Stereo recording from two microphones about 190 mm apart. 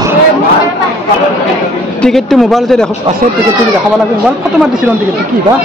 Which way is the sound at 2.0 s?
Centre (ahead or behind).